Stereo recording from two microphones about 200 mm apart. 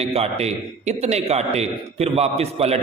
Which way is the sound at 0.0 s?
30° right (ahead or behind).